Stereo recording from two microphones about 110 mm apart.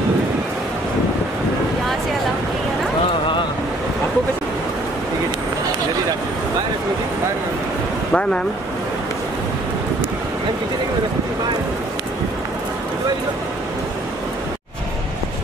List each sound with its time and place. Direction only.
8.1 s speech: 10° left (ahead or behind)